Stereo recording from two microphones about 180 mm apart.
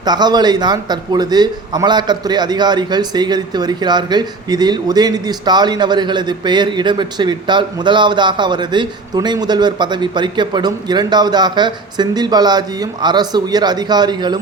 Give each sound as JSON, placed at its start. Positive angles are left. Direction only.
{"t": 0.0, "sound": "a man's voice", "side_deg": -25}